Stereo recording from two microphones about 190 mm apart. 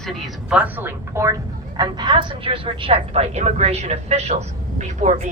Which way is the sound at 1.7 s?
25° right (ahead or behind).